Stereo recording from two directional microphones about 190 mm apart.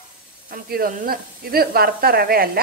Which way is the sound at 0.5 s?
50° right (ahead or behind).